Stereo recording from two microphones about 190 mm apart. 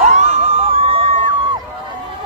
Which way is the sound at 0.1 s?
35° right (ahead or behind).